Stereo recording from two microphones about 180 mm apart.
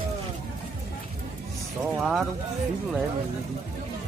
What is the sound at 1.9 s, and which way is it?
Speech, centre (ahead or behind).